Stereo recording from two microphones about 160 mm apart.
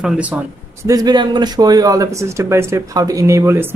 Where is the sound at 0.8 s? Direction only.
25° right (ahead or behind).